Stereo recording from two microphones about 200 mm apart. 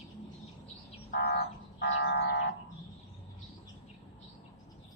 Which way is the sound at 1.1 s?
55° left (ahead or behind).